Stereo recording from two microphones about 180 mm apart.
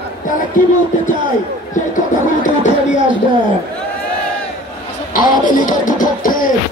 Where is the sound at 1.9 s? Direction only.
45° left (ahead or behind).